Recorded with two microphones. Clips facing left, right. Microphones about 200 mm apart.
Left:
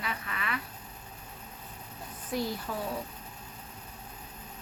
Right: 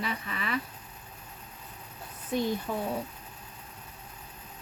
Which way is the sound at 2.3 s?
20° right (ahead or behind).